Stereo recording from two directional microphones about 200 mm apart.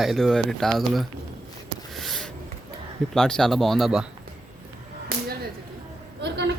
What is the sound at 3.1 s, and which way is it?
Speech, 5° left (ahead or behind).